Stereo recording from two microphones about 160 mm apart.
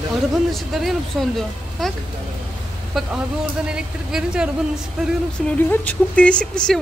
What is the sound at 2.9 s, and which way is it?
Speech, centre (ahead or behind).